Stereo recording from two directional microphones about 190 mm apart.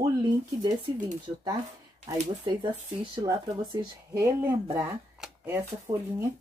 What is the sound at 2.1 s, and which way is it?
Speech, 25° right (ahead or behind).